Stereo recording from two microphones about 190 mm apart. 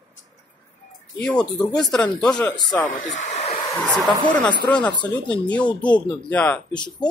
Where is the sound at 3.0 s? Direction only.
40° left (ahead or behind).